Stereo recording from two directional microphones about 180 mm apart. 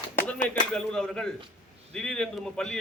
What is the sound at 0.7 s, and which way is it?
A man's voice, 5° left (ahead or behind).